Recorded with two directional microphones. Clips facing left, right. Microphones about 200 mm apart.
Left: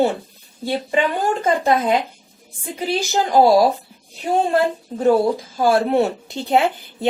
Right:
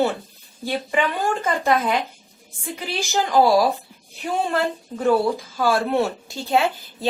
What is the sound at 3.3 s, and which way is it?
Speech, 20° left (ahead or behind).